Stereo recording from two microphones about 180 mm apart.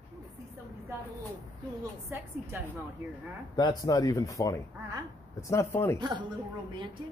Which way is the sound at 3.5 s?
20° left (ahead or behind).